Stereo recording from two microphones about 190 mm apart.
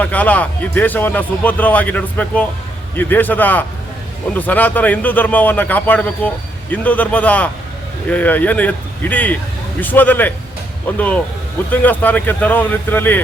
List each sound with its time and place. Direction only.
0.0 s speech: 10° left (ahead or behind)